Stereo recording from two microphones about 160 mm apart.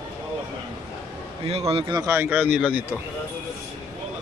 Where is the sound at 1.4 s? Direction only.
40° right (ahead or behind).